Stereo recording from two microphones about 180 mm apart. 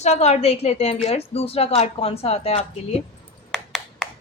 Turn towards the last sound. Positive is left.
turn(degrees=0)  # may be behind; listen again after turning